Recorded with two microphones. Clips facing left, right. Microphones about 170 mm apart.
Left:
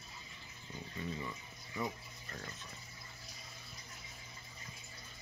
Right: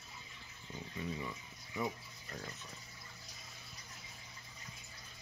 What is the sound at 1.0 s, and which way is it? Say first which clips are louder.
Speech: even; 10° right (ahead or behind).